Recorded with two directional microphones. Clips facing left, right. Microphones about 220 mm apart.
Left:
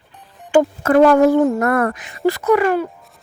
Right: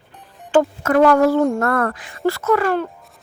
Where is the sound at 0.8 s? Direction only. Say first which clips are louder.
Left 3 dB; 25° left (ahead or behind).